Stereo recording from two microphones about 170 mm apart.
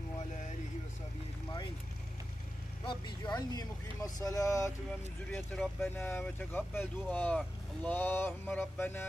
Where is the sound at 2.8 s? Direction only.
25° left (ahead or behind).